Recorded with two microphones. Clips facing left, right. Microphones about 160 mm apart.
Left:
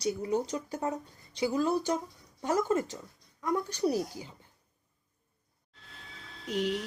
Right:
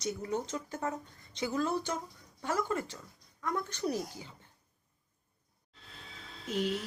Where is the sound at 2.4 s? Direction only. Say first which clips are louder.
Left 5 dB; 20° left (ahead or behind).